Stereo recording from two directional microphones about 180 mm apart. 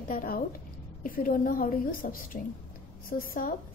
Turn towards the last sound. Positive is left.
turn(degrees=50)  # may be behind; listen again after turning